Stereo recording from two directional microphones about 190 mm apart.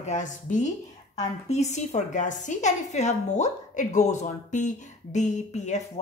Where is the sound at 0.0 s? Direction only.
40° left (ahead or behind).